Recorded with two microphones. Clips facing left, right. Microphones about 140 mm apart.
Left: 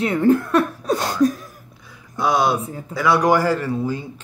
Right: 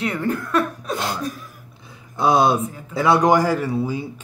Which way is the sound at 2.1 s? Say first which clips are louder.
Right 2 dB; 25° right (ahead or behind).